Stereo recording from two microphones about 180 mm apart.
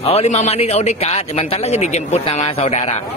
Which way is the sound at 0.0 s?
35° left (ahead or behind).